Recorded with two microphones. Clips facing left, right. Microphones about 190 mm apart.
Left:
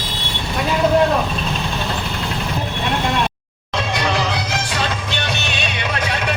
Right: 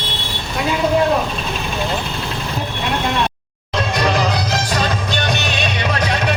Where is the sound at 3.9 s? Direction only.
45° right (ahead or behind).